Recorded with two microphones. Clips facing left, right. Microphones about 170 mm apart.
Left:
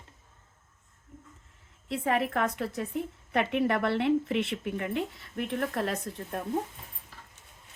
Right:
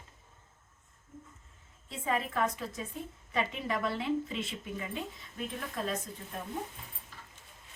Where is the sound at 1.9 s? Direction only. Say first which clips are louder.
Left 6 dB; 70° left (ahead or behind).